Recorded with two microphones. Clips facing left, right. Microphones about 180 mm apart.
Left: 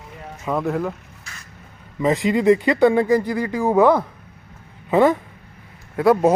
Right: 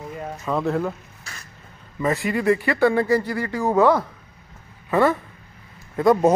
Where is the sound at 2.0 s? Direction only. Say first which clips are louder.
Left 4 dB; 20° left (ahead or behind).